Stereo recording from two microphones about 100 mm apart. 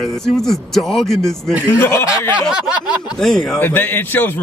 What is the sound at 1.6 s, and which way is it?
Speech, 25° left (ahead or behind).